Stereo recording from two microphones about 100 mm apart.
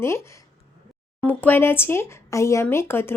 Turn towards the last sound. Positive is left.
turn(degrees=25)  # may be behind; listen again after turning